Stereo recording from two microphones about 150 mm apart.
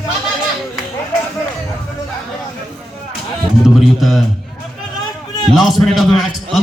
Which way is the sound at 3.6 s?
Centre (ahead or behind).